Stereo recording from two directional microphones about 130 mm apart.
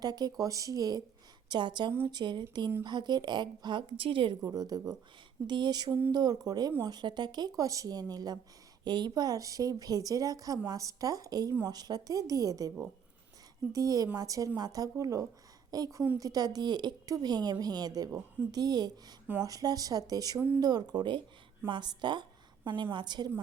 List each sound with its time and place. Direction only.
0.0 s a woman's voice: 30° right (ahead or behind)
13.7 s a woman's voice: 30° right (ahead or behind)